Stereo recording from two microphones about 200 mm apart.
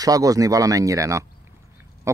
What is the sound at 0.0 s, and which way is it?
Speech, 15° right (ahead or behind).